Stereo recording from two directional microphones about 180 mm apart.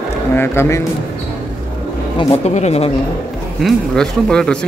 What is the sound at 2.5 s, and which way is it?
Speech, 35° left (ahead or behind).